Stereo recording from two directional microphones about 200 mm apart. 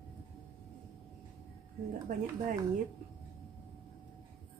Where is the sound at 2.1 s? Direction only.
40° right (ahead or behind).